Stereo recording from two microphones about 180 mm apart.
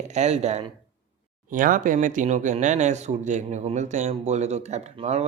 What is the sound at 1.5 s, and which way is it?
Speech, 45° right (ahead or behind).